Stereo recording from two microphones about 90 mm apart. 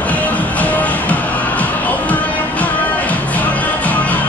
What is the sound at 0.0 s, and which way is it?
Music, 15° left (ahead or behind).